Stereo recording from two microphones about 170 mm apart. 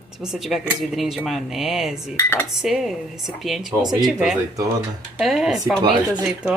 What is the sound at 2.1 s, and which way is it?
Cutlery, 10° left (ahead or behind).